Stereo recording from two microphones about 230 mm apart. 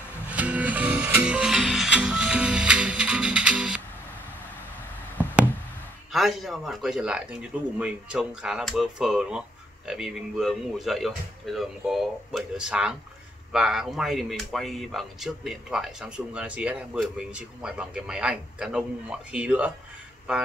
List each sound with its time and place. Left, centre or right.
0.3 s music: centre
6.1 s speech: centre